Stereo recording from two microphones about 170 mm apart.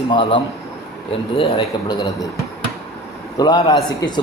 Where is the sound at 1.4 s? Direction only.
35° left (ahead or behind).